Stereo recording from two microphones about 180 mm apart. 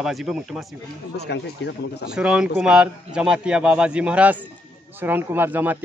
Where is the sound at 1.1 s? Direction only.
65° left (ahead or behind).